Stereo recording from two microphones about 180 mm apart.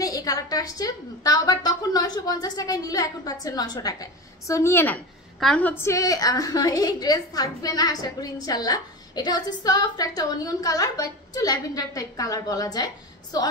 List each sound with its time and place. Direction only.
0.0 s a woman's voice: 20° left (ahead or behind)